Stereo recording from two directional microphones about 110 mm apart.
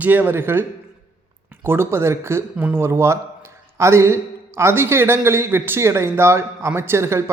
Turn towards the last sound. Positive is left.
turn(degrees=-25)  # may be behind; listen again after turning